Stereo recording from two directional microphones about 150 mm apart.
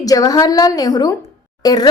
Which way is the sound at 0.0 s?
25° left (ahead or behind).